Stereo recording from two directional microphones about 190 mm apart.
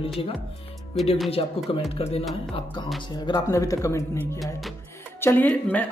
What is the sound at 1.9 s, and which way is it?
Speech, 30° left (ahead or behind).